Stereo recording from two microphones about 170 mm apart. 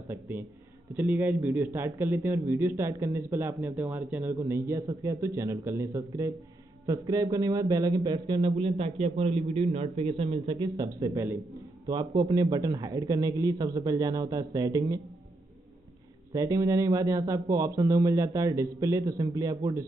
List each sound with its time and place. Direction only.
0.1 s a man's voice: 10° right (ahead or behind)
16.3 s speech: 20° right (ahead or behind)